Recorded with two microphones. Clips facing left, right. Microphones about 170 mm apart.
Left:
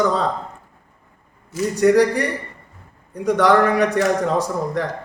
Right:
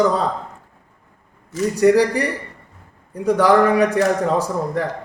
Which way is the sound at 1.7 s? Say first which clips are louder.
Right 1 dB; 5° right (ahead or behind).